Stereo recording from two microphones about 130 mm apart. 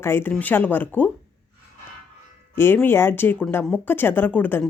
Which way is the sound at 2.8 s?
15° left (ahead or behind).